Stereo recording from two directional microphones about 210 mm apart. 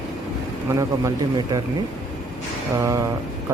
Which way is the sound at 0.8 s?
15° right (ahead or behind).